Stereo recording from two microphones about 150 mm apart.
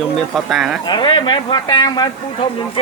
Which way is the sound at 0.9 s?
30° left (ahead or behind).